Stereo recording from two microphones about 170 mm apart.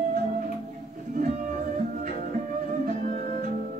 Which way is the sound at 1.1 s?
50° right (ahead or behind).